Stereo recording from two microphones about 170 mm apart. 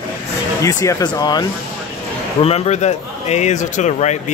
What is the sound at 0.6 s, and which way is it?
Speech, 20° left (ahead or behind).